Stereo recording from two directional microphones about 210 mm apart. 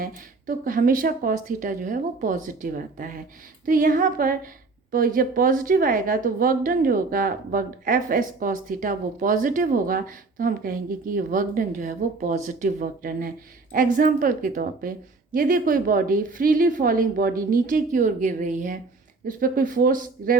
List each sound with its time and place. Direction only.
0.0 s a woman's voice: 40° right (ahead or behind)